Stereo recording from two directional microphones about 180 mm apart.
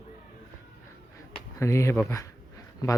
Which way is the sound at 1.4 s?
15° left (ahead or behind).